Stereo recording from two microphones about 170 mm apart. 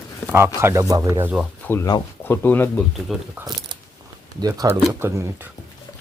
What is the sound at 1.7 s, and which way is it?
Speech, 15° left (ahead or behind).